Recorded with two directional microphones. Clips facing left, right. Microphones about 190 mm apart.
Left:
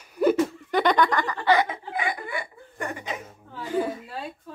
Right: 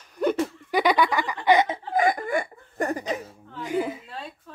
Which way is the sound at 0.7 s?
10° right (ahead or behind).